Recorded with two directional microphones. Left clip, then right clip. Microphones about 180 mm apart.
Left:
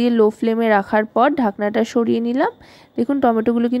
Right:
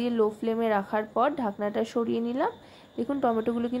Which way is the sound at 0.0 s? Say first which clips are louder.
Left 10 dB; 40° left (ahead or behind).